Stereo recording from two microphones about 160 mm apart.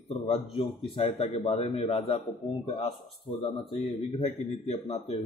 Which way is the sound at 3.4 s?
30° left (ahead or behind).